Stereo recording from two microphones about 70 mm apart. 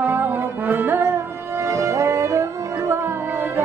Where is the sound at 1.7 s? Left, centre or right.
Right.